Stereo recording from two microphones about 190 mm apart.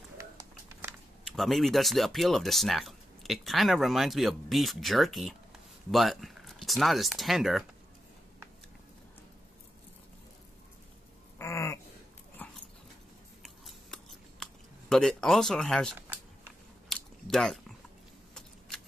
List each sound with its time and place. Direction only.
1.3 s speech: centre (ahead or behind)
11.3 s a sound: 15° left (ahead or behind)
12.4 s dog: 10° left (ahead or behind)
13.4 s scissors: centre (ahead or behind)
16.9 s biting: centre (ahead or behind)